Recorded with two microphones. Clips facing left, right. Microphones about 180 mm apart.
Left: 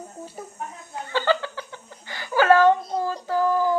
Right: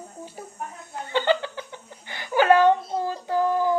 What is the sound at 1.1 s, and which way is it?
Chuckle, 20° right (ahead or behind).